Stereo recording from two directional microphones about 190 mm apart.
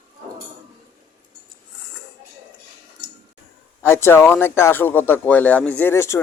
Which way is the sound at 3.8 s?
10° left (ahead or behind).